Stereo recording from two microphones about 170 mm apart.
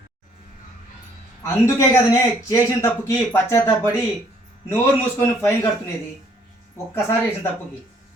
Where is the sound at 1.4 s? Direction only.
15° left (ahead or behind).